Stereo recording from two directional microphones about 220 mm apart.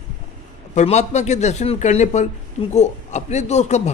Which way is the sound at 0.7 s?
30° left (ahead or behind).